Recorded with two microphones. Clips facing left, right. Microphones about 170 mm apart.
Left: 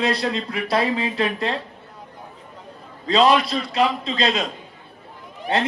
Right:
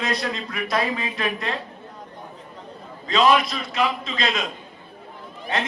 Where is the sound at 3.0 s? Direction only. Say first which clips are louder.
Left 2 dB; 35° left (ahead or behind).